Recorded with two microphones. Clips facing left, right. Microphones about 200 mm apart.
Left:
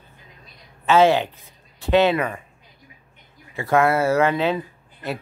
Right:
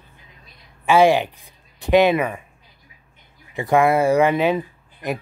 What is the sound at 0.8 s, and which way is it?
Speech, 10° right (ahead or behind).